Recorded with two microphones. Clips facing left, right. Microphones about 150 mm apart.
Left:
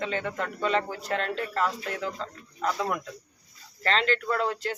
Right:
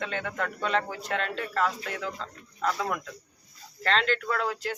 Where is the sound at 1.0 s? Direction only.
35° left (ahead or behind).